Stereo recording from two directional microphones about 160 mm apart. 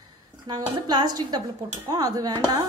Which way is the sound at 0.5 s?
25° right (ahead or behind).